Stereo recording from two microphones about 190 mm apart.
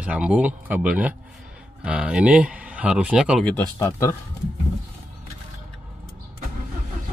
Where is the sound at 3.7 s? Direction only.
15° left (ahead or behind).